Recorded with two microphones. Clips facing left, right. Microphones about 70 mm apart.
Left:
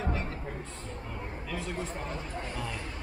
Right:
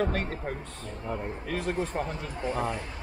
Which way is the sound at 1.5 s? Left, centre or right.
Right.